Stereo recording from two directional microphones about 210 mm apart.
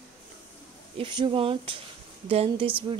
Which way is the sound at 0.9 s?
25° right (ahead or behind).